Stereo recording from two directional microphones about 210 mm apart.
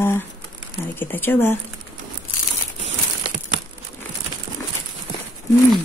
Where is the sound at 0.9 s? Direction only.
10° left (ahead or behind).